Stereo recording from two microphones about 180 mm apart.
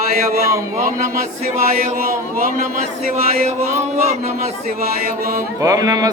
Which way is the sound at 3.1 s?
35° right (ahead or behind).